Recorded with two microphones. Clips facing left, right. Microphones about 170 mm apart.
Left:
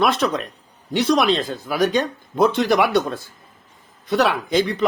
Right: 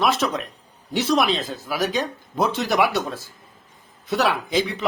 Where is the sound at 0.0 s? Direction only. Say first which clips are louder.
Left 2 dB; 5° right (ahead or behind).